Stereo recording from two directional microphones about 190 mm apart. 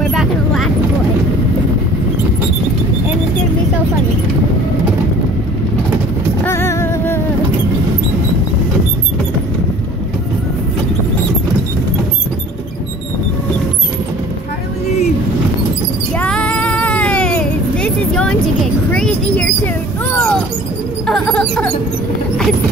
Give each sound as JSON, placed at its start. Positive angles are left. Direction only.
{"t": 0.1, "sound": "vehicle", "side_deg": 0}
{"t": 6.4, "sound": "music", "side_deg": 15}
{"t": 16.2, "sound": "child singing", "side_deg": 5}
{"t": 18.9, "sound": "a sound", "side_deg": 5}
{"t": 21.1, "sound": "mouse", "side_deg": 5}